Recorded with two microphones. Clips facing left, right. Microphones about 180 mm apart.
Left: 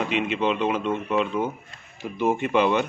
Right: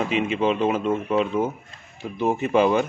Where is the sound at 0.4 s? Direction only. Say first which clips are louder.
Right 3 dB; 40° right (ahead or behind).